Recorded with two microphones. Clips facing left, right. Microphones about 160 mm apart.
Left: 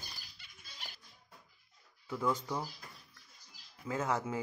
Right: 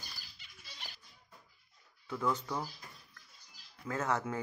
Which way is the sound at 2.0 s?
10° left (ahead or behind).